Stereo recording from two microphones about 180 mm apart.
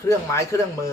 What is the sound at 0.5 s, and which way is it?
Speech, 15° left (ahead or behind).